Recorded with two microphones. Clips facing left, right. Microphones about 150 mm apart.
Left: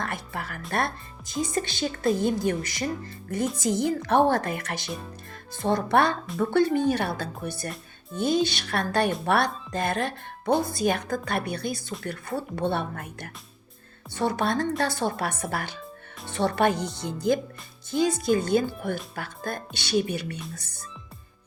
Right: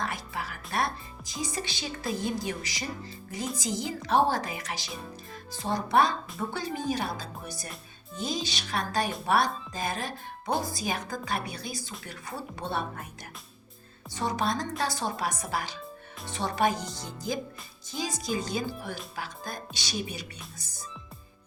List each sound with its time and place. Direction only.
0.0 s music: 55° left (ahead or behind)
0.7 s speech: 55° left (ahead or behind)